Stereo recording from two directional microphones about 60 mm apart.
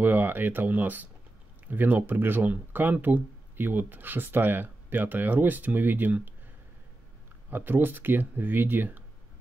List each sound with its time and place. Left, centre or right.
0.0 s speech: right
7.5 s speech: right